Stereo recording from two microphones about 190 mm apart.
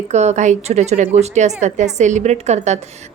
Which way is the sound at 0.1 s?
35° right (ahead or behind).